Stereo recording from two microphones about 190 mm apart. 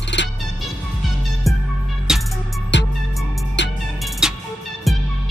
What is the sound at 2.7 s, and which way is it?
Music, 70° left (ahead or behind).